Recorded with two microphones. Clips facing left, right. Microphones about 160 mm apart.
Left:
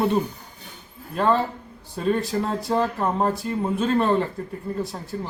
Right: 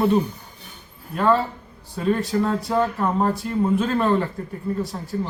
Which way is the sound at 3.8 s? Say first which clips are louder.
Even; 30° left (ahead or behind).